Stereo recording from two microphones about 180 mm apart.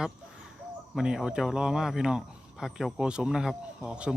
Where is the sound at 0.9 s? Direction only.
5° right (ahead or behind).